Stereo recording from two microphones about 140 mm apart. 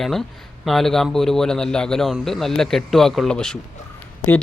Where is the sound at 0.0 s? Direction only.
Centre (ahead or behind).